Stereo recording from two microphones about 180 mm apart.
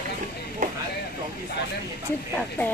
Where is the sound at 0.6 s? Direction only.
50° right (ahead or behind).